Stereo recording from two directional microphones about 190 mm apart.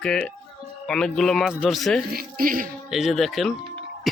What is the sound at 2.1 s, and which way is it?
Speech, 50° right (ahead or behind).